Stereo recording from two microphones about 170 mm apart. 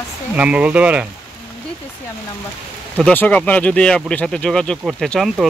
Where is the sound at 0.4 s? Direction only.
5° right (ahead or behind).